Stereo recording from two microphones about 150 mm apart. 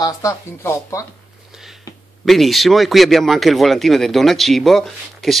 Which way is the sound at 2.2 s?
Centre (ahead or behind).